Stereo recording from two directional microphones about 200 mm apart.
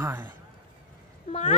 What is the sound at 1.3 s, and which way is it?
Speech, 30° left (ahead or behind).